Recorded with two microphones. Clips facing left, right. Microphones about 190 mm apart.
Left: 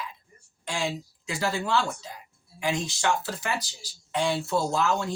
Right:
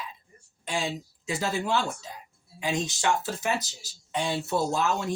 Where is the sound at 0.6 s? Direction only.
20° right (ahead or behind).